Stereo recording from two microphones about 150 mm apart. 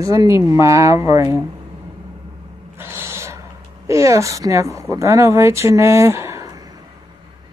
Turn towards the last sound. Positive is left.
turn(degrees=-20)  # may be behind; listen again after turning